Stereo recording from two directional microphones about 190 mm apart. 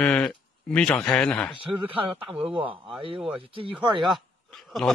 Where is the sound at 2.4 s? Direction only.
5° right (ahead or behind).